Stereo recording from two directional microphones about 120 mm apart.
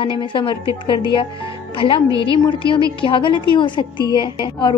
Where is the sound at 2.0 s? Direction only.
30° right (ahead or behind).